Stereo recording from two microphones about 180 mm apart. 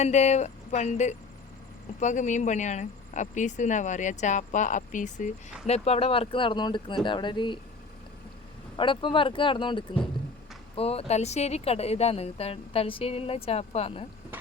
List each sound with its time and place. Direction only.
0.0 s speech: 40° left (ahead or behind)
8.7 s speech: 30° left (ahead or behind)